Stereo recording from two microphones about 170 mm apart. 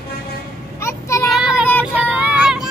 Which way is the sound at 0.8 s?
15° left (ahead or behind).